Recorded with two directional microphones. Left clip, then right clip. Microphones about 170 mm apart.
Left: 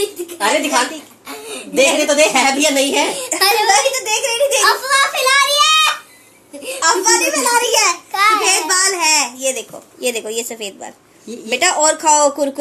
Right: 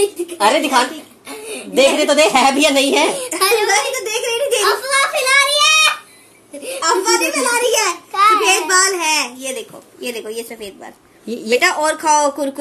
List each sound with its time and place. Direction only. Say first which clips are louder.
0.4 s a woman's voice: right 2 dB; 45° right (ahead or behind)
1.3 s chuckle: even; 10° right (ahead or behind)
1.8 s a woman's voice: even; 40° right (ahead or behind)
3.3 s a child's voice: left 2 dB; 5° right (ahead or behind)
3.6 s speech: left 3 dB; 10° left (ahead or behind)
4.6 s a child's voice: left 2 dB; 10° right (ahead or behind)
6.8 s speech: left 1 dB; 10° left (ahead or behind)
7.4 s a child's voice: left 2 dB; centre (ahead or behind)
9.4 s speech: left 5 dB; 15° left (ahead or behind)
10.0 s a woman's voice: left 4 dB; 30° left (ahead or behind)